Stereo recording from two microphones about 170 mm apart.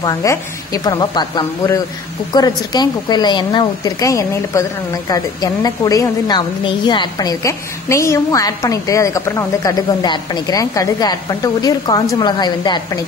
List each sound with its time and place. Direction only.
0.0 s a woman's voice: 20° left (ahead or behind)